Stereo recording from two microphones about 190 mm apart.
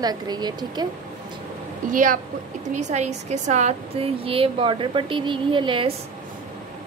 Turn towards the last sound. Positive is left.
turn(degrees=-25)  # may be behind; listen again after turning